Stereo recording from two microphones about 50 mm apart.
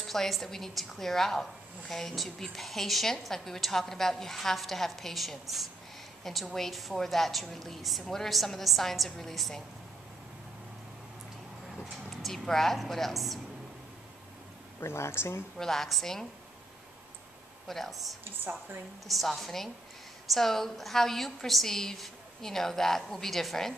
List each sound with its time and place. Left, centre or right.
0.0 s a woman's voice: centre
11.8 s a woman's voice: centre
14.8 s speech: left
15.5 s a woman's voice: centre
17.6 s a woman's voice: centre